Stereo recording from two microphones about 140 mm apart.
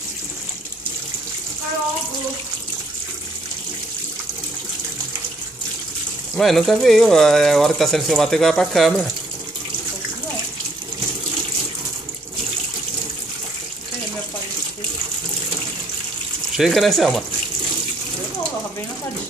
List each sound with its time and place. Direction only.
6.3 s speech: centre (ahead or behind)
16.5 s speech: centre (ahead or behind)